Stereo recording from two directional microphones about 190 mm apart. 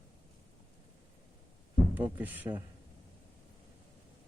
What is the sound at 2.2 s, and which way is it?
Speech, 10° right (ahead or behind).